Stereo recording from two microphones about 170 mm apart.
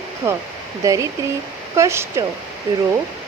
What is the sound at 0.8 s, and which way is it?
Speech, 20° right (ahead or behind).